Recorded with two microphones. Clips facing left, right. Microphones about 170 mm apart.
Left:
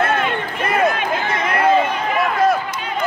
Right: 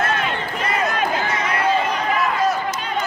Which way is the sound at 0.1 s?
55° left (ahead or behind).